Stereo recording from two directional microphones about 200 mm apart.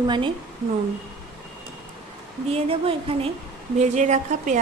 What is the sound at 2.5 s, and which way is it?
Speech, 30° right (ahead or behind).